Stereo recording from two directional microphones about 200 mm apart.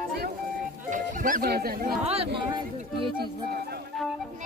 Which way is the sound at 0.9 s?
40° right (ahead or behind).